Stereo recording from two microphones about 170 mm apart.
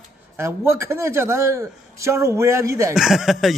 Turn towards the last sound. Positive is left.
turn(degrees=0)  # may be behind; listen again after turning